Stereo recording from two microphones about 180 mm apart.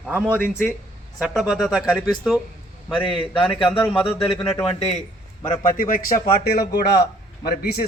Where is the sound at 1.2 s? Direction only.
Centre (ahead or behind).